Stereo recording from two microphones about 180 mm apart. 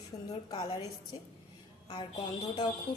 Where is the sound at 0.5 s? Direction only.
25° left (ahead or behind).